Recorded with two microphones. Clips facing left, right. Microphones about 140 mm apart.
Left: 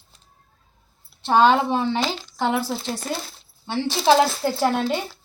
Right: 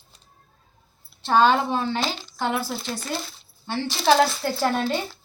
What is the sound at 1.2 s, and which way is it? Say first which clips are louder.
Speech: left 2 dB; 20° left (ahead or behind).